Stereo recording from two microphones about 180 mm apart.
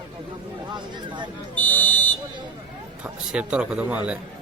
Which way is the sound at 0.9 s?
25° right (ahead or behind).